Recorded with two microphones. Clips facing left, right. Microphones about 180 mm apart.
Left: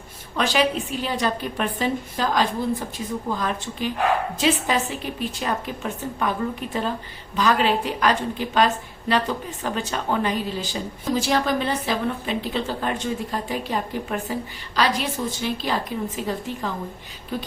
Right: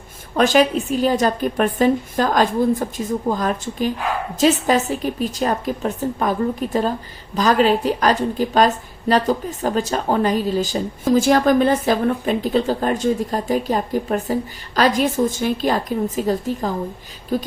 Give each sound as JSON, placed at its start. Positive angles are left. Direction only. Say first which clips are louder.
{"t": 0.3, "sound": "a woman's voice", "louder": "right 6 dB", "side_deg": -45}